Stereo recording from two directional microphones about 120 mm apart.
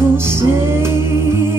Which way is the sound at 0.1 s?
20° right (ahead or behind).